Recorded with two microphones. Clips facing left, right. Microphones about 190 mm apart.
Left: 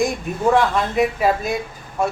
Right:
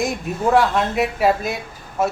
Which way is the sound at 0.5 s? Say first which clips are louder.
Right 2 dB; 5° right (ahead or behind).